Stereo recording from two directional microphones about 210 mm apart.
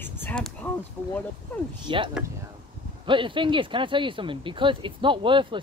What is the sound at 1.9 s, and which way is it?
Speech, 25° right (ahead or behind).